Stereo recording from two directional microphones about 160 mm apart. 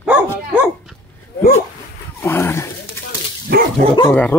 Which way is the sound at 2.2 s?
15° left (ahead or behind).